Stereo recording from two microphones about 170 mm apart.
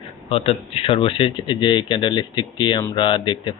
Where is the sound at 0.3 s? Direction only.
35° left (ahead or behind).